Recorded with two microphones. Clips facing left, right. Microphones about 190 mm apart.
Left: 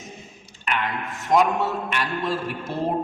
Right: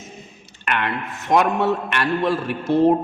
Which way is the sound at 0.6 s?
65° right (ahead or behind).